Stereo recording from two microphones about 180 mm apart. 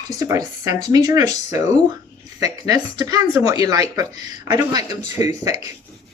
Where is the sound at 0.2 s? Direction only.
20° right (ahead or behind).